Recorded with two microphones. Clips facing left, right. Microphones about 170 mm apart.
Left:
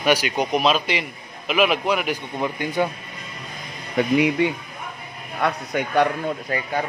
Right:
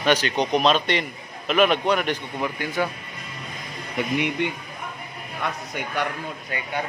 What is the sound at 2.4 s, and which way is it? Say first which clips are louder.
Speech: left 4 dB; 20° left (ahead or behind).